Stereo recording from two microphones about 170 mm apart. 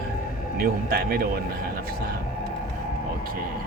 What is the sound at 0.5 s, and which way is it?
Speech, 60° right (ahead or behind).